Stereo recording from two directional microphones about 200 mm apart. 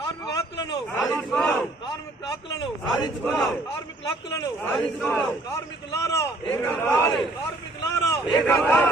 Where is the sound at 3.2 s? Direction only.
5° left (ahead or behind).